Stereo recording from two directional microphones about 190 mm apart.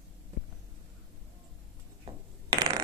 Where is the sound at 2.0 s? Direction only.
25° right (ahead or behind).